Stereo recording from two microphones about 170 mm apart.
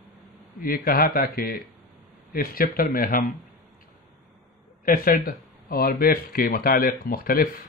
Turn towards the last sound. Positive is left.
turn(degrees=60)  # may be behind; listen again after turning